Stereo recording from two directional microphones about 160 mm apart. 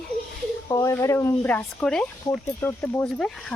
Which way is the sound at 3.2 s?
5° left (ahead or behind).